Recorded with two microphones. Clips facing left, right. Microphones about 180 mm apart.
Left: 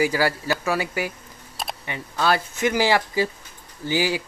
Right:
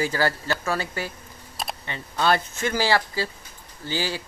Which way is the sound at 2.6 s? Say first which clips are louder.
Left 4 dB; 15° left (ahead or behind).